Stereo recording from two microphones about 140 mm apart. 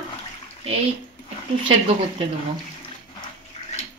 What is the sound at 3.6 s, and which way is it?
Bathtub, 50° left (ahead or behind).